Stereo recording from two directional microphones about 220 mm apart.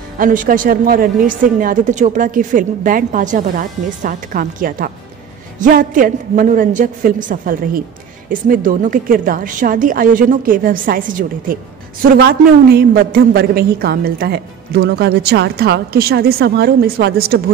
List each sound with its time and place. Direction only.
0.2 s a woman's voice: 40° right (ahead or behind)